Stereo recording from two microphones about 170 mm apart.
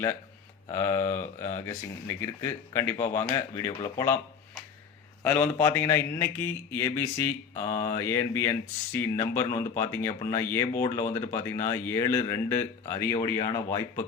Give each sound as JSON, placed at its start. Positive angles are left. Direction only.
{"t": 0.7, "sound": "speech", "side_deg": 15}